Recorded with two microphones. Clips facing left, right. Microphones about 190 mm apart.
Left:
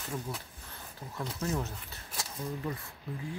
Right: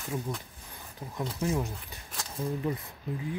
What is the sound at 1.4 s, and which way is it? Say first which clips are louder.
Speech: right 4 dB; 10° right (ahead or behind).